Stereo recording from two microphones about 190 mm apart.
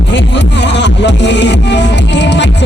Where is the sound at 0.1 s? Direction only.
65° left (ahead or behind).